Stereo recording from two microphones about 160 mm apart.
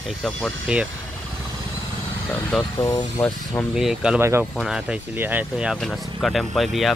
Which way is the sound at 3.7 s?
5° right (ahead or behind).